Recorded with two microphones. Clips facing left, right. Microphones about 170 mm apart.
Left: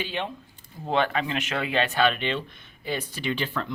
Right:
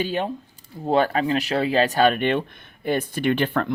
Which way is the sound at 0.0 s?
40° right (ahead or behind).